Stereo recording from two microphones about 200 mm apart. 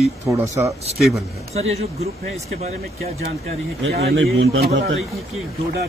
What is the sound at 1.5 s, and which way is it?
Speech, 30° right (ahead or behind).